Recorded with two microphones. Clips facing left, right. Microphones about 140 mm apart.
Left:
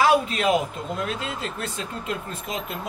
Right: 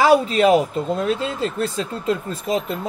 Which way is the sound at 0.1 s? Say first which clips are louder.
Right 6 dB; 35° right (ahead or behind).